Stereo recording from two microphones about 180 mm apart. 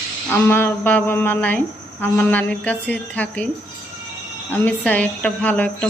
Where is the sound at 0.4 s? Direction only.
10° left (ahead or behind).